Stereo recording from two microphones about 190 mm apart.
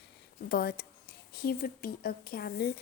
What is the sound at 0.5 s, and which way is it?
A woman's voice, 55° left (ahead or behind).